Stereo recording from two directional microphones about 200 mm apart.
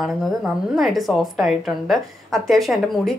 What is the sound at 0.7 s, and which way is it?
A woman's voice, centre (ahead or behind).